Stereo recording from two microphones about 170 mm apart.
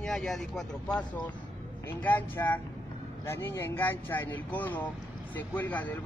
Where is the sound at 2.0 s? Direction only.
10° left (ahead or behind).